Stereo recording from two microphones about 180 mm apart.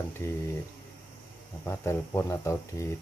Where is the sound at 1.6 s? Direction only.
15° left (ahead or behind).